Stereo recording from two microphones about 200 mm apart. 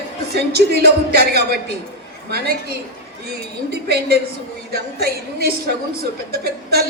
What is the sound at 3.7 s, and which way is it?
A woman's voice, 55° right (ahead or behind).